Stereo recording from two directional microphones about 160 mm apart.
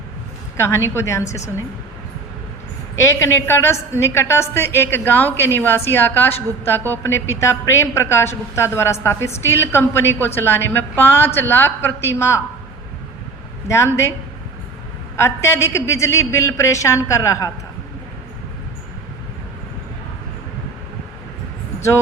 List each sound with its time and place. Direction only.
0.5 s a woman's voice: 15° left (ahead or behind)
3.0 s a woman's voice: 15° left (ahead or behind)
13.7 s a woman's voice: 15° left (ahead or behind)
15.1 s a woman's voice: 15° left (ahead or behind)